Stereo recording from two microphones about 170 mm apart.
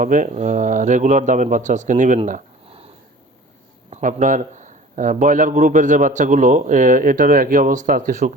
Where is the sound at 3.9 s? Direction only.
45° right (ahead or behind).